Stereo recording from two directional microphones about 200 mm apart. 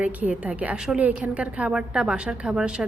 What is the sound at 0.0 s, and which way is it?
A woman's voice, 5° right (ahead or behind).